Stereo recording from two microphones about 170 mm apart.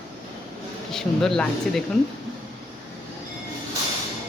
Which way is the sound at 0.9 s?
5° left (ahead or behind).